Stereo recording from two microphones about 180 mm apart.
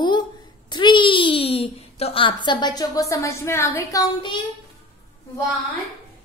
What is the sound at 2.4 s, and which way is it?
A woman's voice, 25° left (ahead or behind).